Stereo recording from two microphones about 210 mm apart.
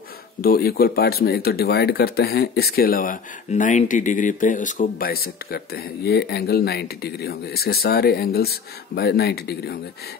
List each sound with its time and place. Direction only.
0.4 s speech: 45° left (ahead or behind)